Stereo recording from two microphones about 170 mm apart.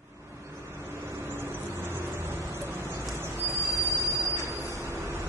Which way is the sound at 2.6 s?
15° right (ahead or behind).